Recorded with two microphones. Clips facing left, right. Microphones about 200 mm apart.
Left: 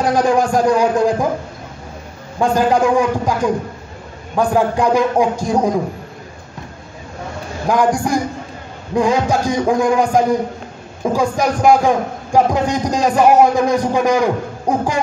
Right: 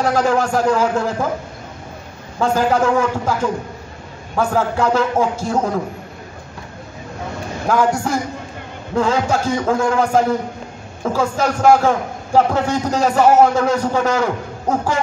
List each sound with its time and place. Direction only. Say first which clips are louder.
0.0 s a man's voice: left 2 dB; 15° left (ahead or behind)
2.4 s a man's voice: left 2 dB; 15° left (ahead or behind)
7.6 s a man's voice: left 2 dB; 15° left (ahead or behind)